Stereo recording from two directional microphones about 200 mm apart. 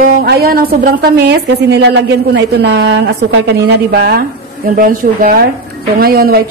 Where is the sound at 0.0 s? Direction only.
50° right (ahead or behind).